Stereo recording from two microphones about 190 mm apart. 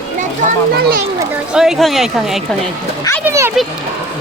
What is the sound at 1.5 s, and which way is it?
Speech, centre (ahead or behind).